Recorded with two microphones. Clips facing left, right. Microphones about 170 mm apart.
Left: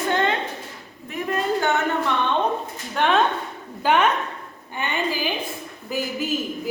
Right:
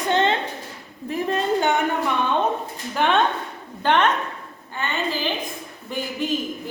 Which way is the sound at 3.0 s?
Centre (ahead or behind).